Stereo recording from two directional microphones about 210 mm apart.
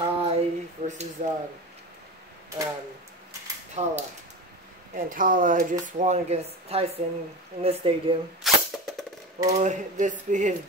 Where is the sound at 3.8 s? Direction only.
35° right (ahead or behind).